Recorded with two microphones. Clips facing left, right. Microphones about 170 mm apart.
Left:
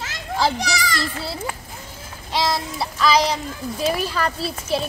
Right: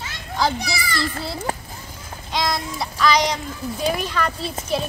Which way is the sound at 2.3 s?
5° left (ahead or behind).